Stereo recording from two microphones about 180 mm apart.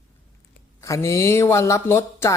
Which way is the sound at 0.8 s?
15° left (ahead or behind).